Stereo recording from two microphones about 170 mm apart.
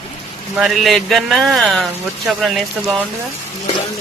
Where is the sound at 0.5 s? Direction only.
Centre (ahead or behind).